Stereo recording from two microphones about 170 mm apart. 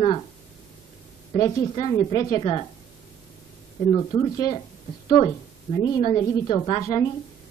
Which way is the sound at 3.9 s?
20° left (ahead or behind).